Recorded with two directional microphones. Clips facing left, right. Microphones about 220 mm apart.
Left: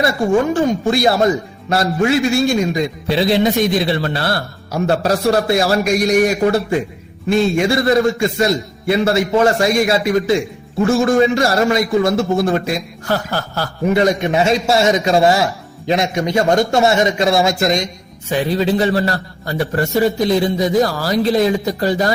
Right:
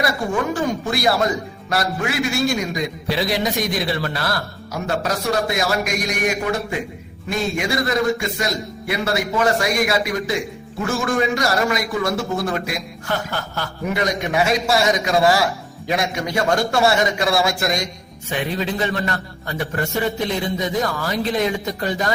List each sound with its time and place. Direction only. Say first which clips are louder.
0.9 s a man's voice: left 5 dB; 25° left (ahead or behind)
18.3 s a man's voice: left 7 dB; 35° left (ahead or behind)